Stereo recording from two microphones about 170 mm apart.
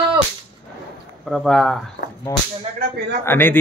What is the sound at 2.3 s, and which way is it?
A man's voice, 15° left (ahead or behind).